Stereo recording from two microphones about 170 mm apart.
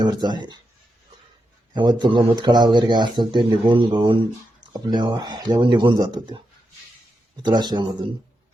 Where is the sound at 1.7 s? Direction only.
25° right (ahead or behind).